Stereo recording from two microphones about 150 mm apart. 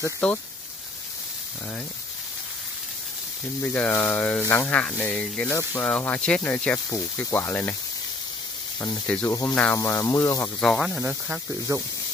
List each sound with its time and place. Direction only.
0.0 s speech: 10° left (ahead or behind)
3.6 s speech: 10° left (ahead or behind)
9.0 s speech: 10° left (ahead or behind)
10.6 s speech: 5° left (ahead or behind)
11.1 s speech: 15° right (ahead or behind)